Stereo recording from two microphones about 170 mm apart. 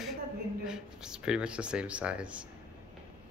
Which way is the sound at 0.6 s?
5° right (ahead or behind).